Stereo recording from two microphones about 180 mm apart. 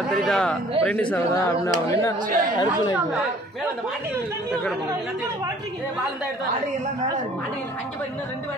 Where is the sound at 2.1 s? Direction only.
50° right (ahead or behind).